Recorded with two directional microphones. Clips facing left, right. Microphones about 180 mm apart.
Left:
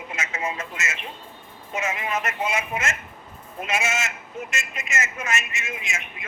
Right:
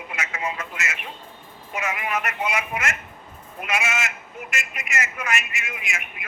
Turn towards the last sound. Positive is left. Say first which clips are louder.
# even
turn(degrees=25)  # may be behind; listen again after turning